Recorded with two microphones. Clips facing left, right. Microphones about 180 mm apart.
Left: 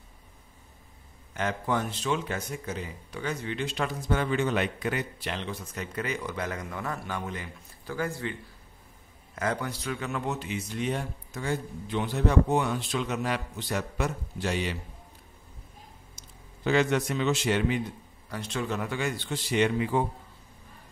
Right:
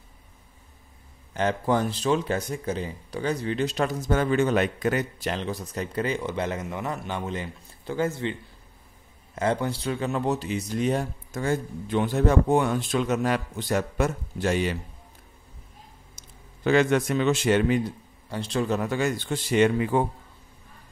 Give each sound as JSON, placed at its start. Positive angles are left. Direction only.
{"t": 1.3, "sound": "a man's voice", "side_deg": -30}
{"t": 16.2, "sound": "a man's voice", "side_deg": -55}
{"t": 18.3, "sound": "a man's voice", "side_deg": -35}